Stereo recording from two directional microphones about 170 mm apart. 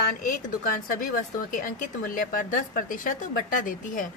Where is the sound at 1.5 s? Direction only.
50° left (ahead or behind).